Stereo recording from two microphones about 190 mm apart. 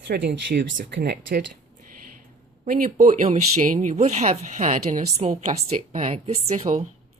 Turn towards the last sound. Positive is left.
turn(degrees=-35)  # may be behind; listen again after turning